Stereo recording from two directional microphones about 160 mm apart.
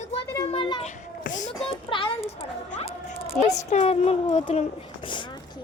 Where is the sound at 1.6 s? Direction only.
35° left (ahead or behind).